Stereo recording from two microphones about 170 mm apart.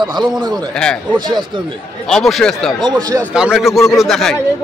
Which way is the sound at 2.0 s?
Centre (ahead or behind).